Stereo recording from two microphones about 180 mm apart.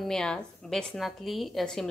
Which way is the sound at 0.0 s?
5° left (ahead or behind).